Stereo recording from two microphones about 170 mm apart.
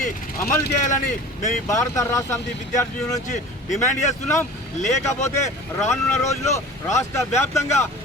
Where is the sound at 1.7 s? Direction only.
15° left (ahead or behind).